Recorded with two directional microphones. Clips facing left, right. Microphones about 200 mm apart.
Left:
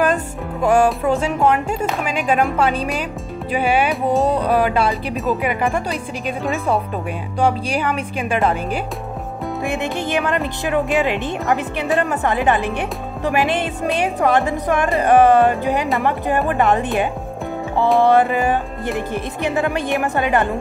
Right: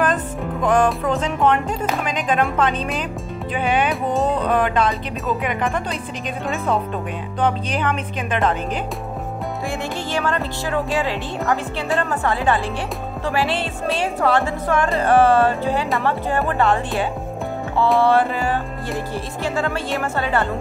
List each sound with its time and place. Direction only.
0.0 s speech: 10° left (ahead or behind)
9.7 s speech: 20° left (ahead or behind)